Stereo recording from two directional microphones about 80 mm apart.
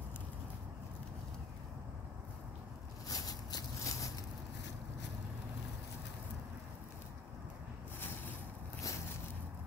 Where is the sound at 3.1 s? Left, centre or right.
Left.